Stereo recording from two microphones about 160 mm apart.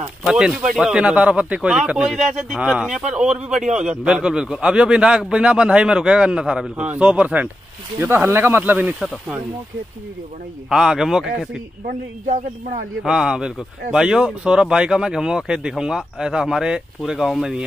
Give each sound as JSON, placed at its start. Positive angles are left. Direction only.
{"t": 0.3, "sound": "speech", "side_deg": -5}
{"t": 10.7, "sound": "speech", "side_deg": -5}
{"t": 11.8, "sound": "speech", "side_deg": -60}
{"t": 13.0, "sound": "speech", "side_deg": -5}